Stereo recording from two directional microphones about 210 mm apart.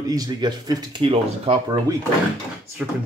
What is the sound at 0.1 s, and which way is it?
Speech, 20° right (ahead or behind).